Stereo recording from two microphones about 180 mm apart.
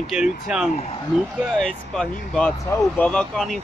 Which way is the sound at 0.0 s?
5° right (ahead or behind).